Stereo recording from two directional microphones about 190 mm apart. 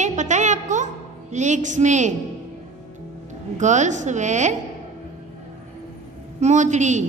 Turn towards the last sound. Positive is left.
turn(degrees=-40)  # may be behind; listen again after turning